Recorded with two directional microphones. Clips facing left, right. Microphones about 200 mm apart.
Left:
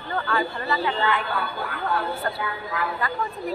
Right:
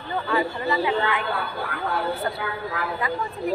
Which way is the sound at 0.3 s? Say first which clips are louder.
Right 3 dB; 15° right (ahead or behind).